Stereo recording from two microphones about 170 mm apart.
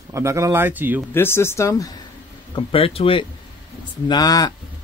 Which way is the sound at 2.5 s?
35° left (ahead or behind).